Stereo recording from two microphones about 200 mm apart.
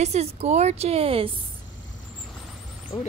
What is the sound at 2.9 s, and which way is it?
Speech, 20° left (ahead or behind).